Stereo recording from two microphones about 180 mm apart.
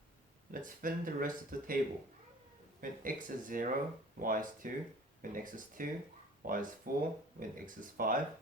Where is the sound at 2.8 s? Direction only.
50° right (ahead or behind).